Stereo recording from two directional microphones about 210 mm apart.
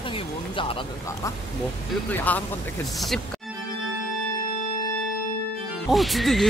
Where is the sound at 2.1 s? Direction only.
10° left (ahead or behind).